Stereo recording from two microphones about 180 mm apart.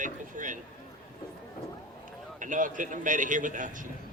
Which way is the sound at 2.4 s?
45° right (ahead or behind).